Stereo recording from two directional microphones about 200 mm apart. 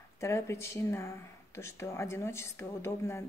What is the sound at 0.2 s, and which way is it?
Speech, 15° left (ahead or behind).